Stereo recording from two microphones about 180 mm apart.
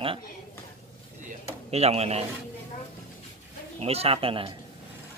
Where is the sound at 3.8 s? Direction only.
35° right (ahead or behind).